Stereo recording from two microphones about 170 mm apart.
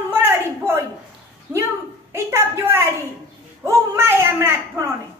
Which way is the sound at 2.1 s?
15° right (ahead or behind).